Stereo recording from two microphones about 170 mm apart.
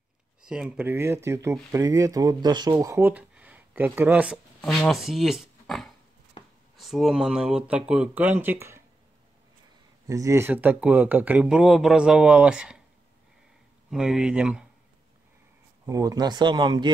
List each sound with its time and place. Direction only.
0.4 s speech: 5° right (ahead or behind)
10.0 s speech: 20° right (ahead or behind)
13.8 s speech: 5° right (ahead or behind)
15.8 s speech: 20° right (ahead or behind)